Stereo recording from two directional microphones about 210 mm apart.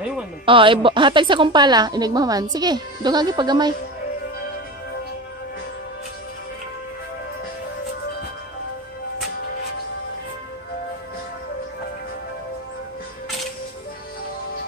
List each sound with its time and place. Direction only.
0.5 s a woman's voice: 25° right (ahead or behind)